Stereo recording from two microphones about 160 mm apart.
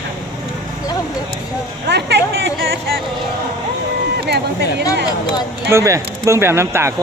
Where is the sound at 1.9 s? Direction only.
90° right.